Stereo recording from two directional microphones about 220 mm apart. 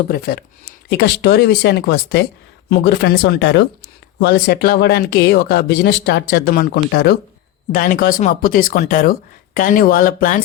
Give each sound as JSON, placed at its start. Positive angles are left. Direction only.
{"t": 0.1, "sound": "speech", "side_deg": 45}